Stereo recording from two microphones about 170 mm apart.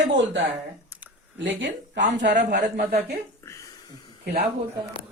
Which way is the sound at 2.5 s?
70° right (ahead or behind).